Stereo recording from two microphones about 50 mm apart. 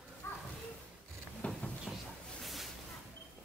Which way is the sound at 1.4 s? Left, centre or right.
Left.